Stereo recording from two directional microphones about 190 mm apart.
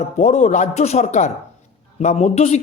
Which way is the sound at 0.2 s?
40° left (ahead or behind).